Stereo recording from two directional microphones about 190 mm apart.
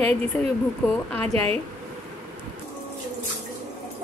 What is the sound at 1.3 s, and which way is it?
Speech, 30° right (ahead or behind).